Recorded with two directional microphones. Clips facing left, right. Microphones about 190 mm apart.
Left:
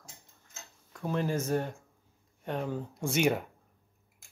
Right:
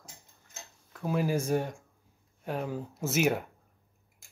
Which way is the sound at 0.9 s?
5° right (ahead or behind).